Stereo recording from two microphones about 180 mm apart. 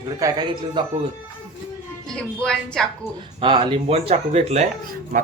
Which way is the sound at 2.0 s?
5° left (ahead or behind).